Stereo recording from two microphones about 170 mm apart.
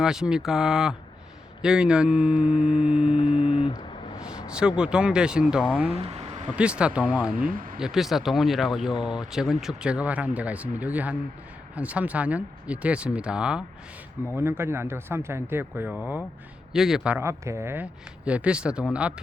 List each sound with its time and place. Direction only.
0.0 s speech: 5° right (ahead or behind)
2.9 s mantra: 30° left (ahead or behind)
4.2 s a sound: 5° right (ahead or behind)
4.8 s speech: 5° right (ahead or behind)
5.9 s a sound: 35° right (ahead or behind)
6.6 s speech: 5° right (ahead or behind)